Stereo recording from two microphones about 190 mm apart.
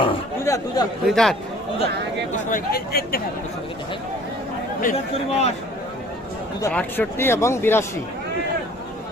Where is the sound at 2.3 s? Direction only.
50° left (ahead or behind).